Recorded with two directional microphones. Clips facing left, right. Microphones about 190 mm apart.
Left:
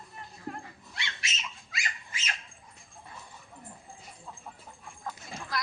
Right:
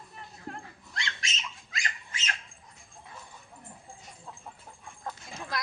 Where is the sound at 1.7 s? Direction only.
10° left (ahead or behind).